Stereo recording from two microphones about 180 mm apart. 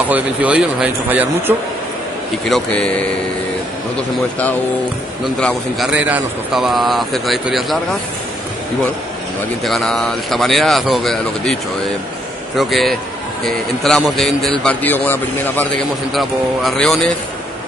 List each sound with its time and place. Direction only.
0.1 s speech: 5° right (ahead or behind)
2.4 s a man's voice: 5° left (ahead or behind)
5.2 s a man's voice: centre (ahead or behind)
9.7 s a man's voice: centre (ahead or behind)
12.5 s a man's voice: centre (ahead or behind)